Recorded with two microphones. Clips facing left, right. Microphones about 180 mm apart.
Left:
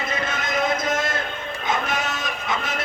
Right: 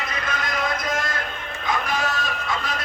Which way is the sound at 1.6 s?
20° left (ahead or behind).